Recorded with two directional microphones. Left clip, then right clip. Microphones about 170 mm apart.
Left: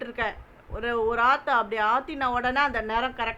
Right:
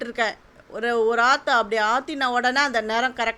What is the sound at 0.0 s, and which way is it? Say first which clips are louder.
A man's voice: right 5 dB; 30° right (ahead or behind).